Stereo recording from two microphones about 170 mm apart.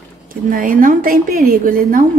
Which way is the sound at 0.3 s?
55° right (ahead or behind).